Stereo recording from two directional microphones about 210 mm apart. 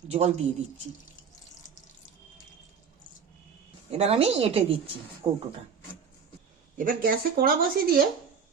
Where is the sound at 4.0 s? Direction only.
30° right (ahead or behind).